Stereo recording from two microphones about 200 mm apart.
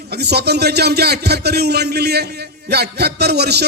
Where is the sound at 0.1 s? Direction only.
55° right (ahead or behind).